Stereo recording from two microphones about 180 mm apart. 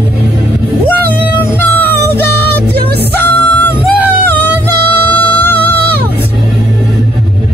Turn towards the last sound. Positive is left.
turn(degrees=10)  # may be behind; listen again after turning